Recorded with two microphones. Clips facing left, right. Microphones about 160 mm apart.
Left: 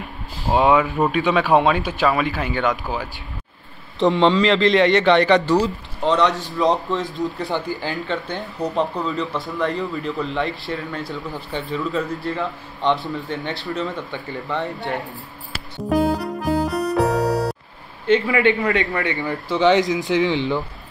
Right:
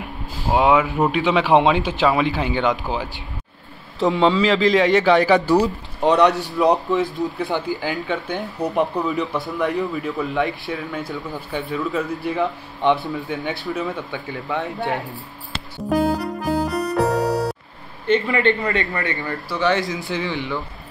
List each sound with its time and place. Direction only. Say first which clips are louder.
0.5 s speech: even; 10° right (ahead or behind)
4.0 s speech: left 1 dB; centre (ahead or behind); by 9.8 s 20° right (ahead or behind)
9.9 s speech: right 1 dB; 5° right (ahead or behind)
13.3 s speech: right 2 dB; 5° right (ahead or behind)
15.9 s music: even; centre (ahead or behind)
18.2 s a man's voice: left 1 dB; 10° left (ahead or behind)